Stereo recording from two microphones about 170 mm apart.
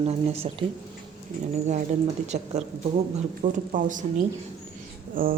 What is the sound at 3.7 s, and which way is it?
Speech, 50° right (ahead or behind).